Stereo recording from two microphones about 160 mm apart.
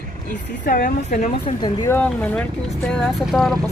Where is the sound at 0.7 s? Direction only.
65° left (ahead or behind).